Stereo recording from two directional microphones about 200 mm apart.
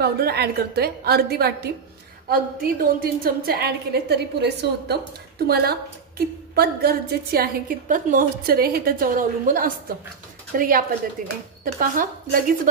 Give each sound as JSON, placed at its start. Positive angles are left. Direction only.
{"t": 0.0, "sound": "a woman's voice", "side_deg": -50}